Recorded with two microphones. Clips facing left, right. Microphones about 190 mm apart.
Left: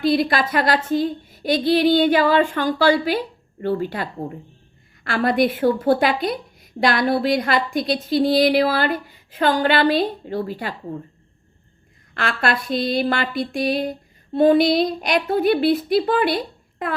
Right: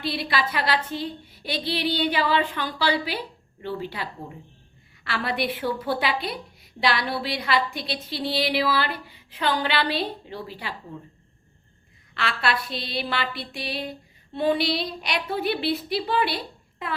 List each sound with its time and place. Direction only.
0.0 s a woman's voice: 45° left (ahead or behind)
12.1 s a woman's voice: 50° left (ahead or behind)